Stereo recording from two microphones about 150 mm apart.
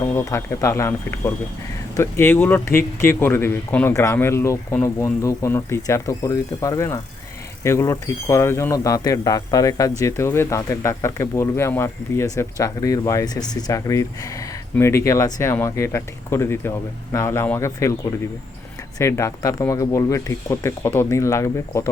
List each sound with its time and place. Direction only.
0.0 s speech: 15° left (ahead or behind)